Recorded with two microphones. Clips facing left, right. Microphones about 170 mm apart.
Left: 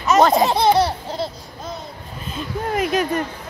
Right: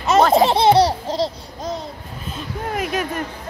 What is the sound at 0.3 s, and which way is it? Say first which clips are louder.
Laughter: right 2 dB; 25° right (ahead or behind).